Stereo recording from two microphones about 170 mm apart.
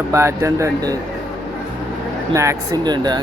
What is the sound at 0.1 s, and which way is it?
Speech, 15° right (ahead or behind).